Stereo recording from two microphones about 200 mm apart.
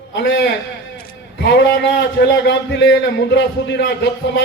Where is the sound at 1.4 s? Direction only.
55° left (ahead or behind).